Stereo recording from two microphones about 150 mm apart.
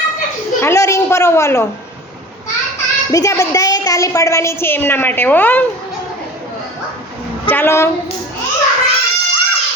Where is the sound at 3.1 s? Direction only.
25° left (ahead or behind).